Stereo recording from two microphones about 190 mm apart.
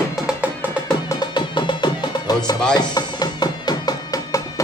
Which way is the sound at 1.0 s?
20° left (ahead or behind).